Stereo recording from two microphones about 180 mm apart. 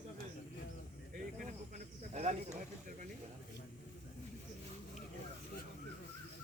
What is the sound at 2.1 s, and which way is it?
Snake, 40° right (ahead or behind).